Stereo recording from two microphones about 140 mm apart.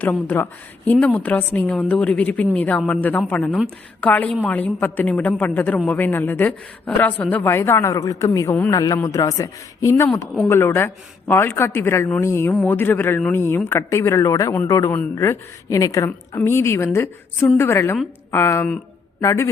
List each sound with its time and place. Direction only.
0.0 s a woman's voice: 10° left (ahead or behind)